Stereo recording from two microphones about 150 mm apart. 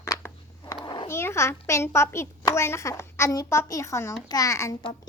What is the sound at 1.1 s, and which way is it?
A child's voice, 15° left (ahead or behind).